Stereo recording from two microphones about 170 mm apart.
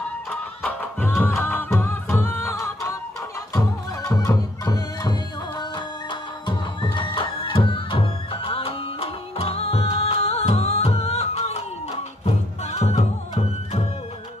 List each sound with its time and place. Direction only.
0.3 s music: 10° left (ahead or behind)
6.4 s music: 30° left (ahead or behind)
12.7 s music: 40° left (ahead or behind)